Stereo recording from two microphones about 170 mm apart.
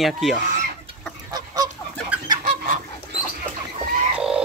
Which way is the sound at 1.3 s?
20° right (ahead or behind).